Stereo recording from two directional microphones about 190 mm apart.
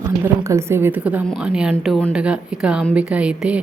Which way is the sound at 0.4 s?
15° right (ahead or behind).